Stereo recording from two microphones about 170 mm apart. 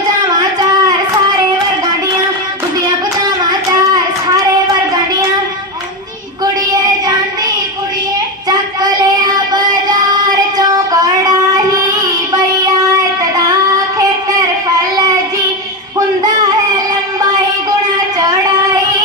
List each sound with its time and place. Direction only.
0.3 s a sound: 25° right (ahead or behind)
3.7 s child singing: 25° right (ahead or behind)
8.4 s child singing: 25° right (ahead or behind)
10.6 s child singing: 20° right (ahead or behind)
12.9 s child singing: 20° right (ahead or behind)